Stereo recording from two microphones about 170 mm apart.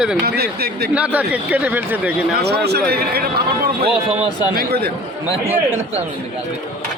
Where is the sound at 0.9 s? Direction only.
10° right (ahead or behind).